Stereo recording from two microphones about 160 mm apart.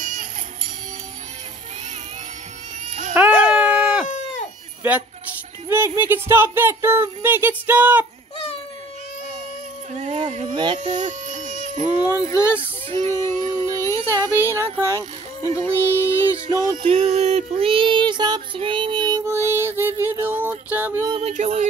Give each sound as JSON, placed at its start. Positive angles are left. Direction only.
{"t": 0.0, "sound": "music", "side_deg": -50}
{"t": 3.2, "sound": "a sound", "side_deg": -10}
{"t": 5.7, "sound": "speech", "side_deg": -15}
{"t": 9.9, "sound": "a sound", "side_deg": -45}
{"t": 10.5, "sound": "speech", "side_deg": -30}
{"t": 10.8, "sound": "baby cry", "side_deg": -50}
{"t": 12.3, "sound": "speech", "side_deg": 15}
{"t": 12.5, "sound": "child singing", "side_deg": -40}
{"t": 13.8, "sound": "a sound", "side_deg": 15}
{"t": 14.5, "sound": "speech", "side_deg": -15}
{"t": 15.0, "sound": "music", "side_deg": 20}
{"t": 16.7, "sound": "a sound", "side_deg": -40}
{"t": 21.1, "sound": "music", "side_deg": -45}